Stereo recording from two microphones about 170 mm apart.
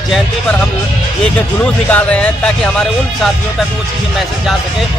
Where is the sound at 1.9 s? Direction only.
10° left (ahead or behind).